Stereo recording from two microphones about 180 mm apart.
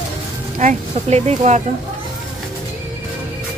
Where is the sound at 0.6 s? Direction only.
40° right (ahead or behind).